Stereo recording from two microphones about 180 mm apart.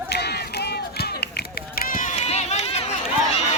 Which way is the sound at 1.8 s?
45° left (ahead or behind).